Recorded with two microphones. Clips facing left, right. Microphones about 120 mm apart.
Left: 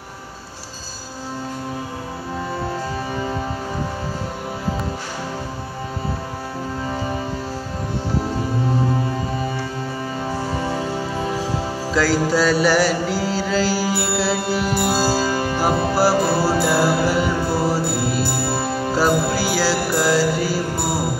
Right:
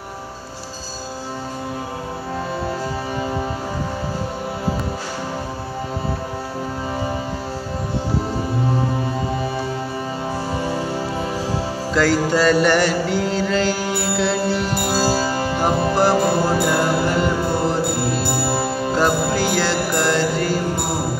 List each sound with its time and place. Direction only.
11.9 s music: centre (ahead or behind)
15.2 s music: 25° right (ahead or behind)
15.6 s music: 5° left (ahead or behind)